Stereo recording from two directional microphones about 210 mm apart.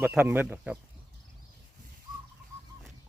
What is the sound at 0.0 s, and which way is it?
Speech, 10° right (ahead or behind).